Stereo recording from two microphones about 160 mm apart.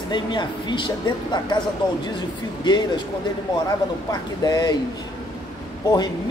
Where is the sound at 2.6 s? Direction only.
25° left (ahead or behind).